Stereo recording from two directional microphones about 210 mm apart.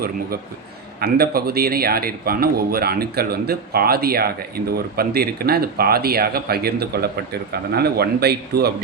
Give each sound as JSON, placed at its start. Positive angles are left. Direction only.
{"t": 0.9, "sound": "speech", "side_deg": -50}